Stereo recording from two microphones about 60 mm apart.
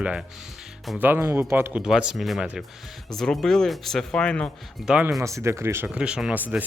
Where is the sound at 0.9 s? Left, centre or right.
Right.